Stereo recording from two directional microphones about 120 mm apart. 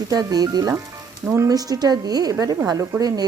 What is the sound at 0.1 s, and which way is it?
Speech, 30° right (ahead or behind).